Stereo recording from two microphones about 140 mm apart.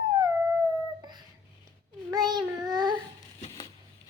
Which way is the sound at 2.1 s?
30° right (ahead or behind).